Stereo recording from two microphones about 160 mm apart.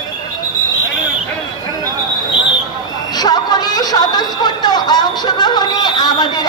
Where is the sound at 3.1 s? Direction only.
25° left (ahead or behind).